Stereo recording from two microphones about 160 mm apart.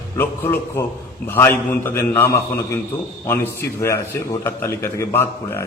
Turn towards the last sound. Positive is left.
turn(degrees=15)  # may be behind; listen again after turning